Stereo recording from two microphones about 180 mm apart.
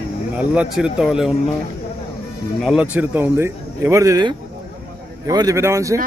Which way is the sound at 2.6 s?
5° right (ahead or behind).